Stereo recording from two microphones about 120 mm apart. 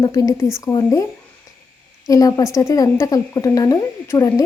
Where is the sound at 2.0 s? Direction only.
30° left (ahead or behind).